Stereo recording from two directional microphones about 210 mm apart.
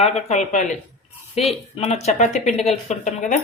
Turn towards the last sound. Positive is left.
turn(degrees=35)  # may be behind; listen again after turning